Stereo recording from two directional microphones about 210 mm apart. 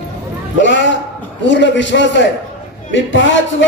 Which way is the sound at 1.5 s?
60° left (ahead or behind).